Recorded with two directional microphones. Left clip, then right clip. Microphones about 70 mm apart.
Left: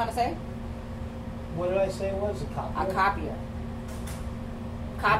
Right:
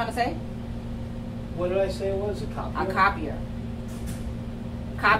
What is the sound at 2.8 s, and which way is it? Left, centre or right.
Speech, right.